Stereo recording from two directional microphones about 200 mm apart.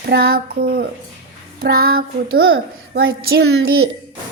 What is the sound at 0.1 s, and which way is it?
Speech, 50° right (ahead or behind).